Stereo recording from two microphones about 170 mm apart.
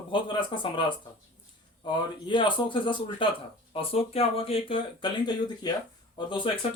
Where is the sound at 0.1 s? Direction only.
30° left (ahead or behind).